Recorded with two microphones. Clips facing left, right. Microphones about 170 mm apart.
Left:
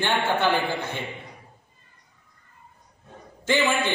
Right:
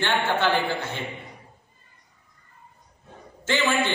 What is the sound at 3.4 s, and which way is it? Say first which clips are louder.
Speech: left 1 dB; 15° left (ahead or behind).